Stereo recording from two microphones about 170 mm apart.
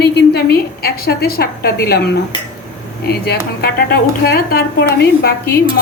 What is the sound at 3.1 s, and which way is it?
A woman's voice, 70° left (ahead or behind).